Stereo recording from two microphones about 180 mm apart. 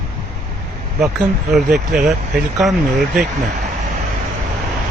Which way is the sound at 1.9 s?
5° right (ahead or behind).